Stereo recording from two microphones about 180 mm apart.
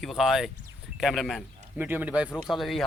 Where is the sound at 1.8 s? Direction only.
10° right (ahead or behind).